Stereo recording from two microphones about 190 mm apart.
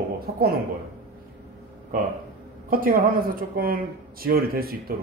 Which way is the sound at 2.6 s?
50° right (ahead or behind).